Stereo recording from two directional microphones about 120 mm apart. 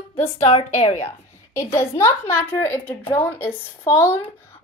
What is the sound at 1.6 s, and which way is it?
A woman's voice, 25° left (ahead or behind).